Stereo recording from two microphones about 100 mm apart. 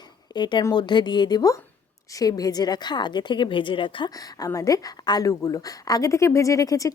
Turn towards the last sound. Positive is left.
turn(degrees=35)  # may be behind; listen again after turning